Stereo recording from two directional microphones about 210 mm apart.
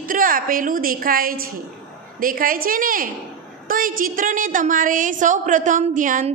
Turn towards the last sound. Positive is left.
turn(degrees=-40)  # may be behind; listen again after turning